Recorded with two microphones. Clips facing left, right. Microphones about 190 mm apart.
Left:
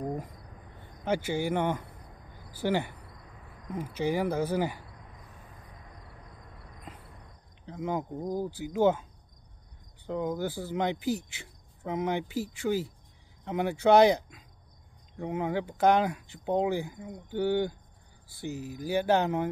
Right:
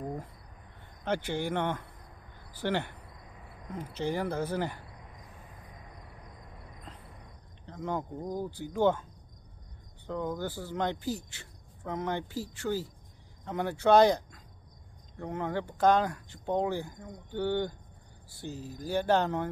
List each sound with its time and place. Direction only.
0.0 s cricket: 15° left (ahead or behind)
1.0 s speech: 10° left (ahead or behind)
7.6 s speech: 10° left (ahead or behind)
10.0 s speech: 10° left (ahead or behind)